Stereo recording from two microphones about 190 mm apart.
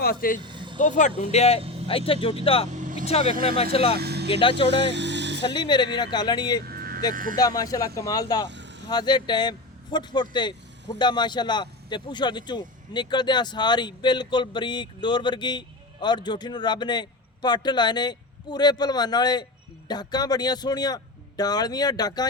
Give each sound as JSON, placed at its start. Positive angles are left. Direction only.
{"t": 0.0, "sound": "speech", "side_deg": 50}
{"t": 0.4, "sound": "vehicle", "side_deg": -25}
{"t": 0.8, "sound": "speech", "side_deg": 40}
{"t": 3.9, "sound": "vehicle", "side_deg": -55}
{"t": 4.3, "sound": "speech", "side_deg": 30}
{"t": 4.9, "sound": "vehicle", "side_deg": -65}
{"t": 5.4, "sound": "speech", "side_deg": 25}
{"t": 6.7, "sound": "vehicle", "side_deg": -50}
{"t": 7.1, "sound": "speech", "side_deg": -45}
{"t": 7.3, "sound": "speech", "side_deg": 20}
{"t": 8.4, "sound": "vehicle", "side_deg": -70}
{"t": 8.9, "sound": "speech", "side_deg": 20}